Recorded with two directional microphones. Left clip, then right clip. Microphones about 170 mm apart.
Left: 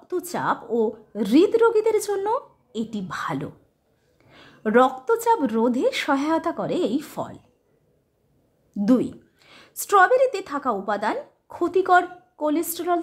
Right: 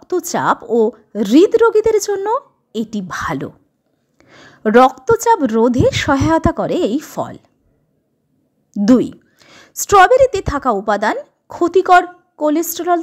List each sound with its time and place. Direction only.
0.0 s a woman's voice: 35° right (ahead or behind)
8.7 s a woman's voice: 35° right (ahead or behind)